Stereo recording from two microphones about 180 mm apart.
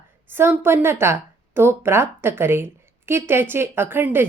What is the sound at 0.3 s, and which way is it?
Speech, 10° right (ahead or behind).